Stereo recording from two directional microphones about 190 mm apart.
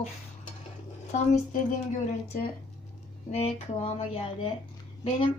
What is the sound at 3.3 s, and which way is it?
Speech, 30° left (ahead or behind).